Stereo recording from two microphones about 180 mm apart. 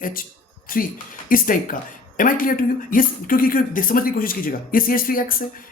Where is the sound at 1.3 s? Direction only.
50° left (ahead or behind).